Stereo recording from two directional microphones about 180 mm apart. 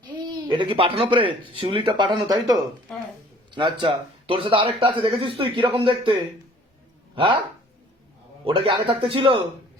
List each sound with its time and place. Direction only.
0.0 s speech: 25° right (ahead or behind)
8.4 s speech: 30° right (ahead or behind)